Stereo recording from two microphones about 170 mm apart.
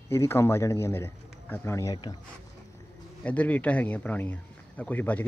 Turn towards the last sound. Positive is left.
turn(degrees=10)  # may be behind; listen again after turning